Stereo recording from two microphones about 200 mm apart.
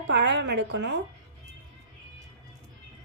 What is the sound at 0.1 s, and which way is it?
Speech, 60° right (ahead or behind).